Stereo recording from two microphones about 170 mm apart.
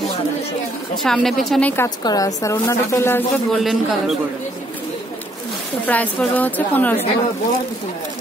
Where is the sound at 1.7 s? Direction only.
20° left (ahead or behind).